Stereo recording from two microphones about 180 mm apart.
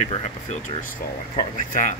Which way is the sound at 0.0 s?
40° left (ahead or behind).